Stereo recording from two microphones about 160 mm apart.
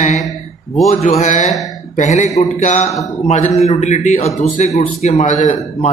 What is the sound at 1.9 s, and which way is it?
A man's voice, 45° left (ahead or behind).